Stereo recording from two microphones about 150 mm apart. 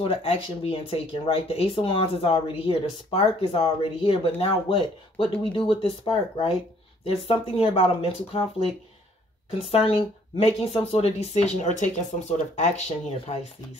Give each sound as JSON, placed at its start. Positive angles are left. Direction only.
{"t": 0.0, "sound": "speech", "side_deg": 40}
{"t": 9.7, "sound": "speech", "side_deg": 40}